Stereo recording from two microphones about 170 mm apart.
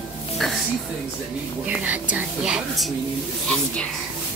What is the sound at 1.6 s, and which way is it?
A woman's voice, 10° right (ahead or behind).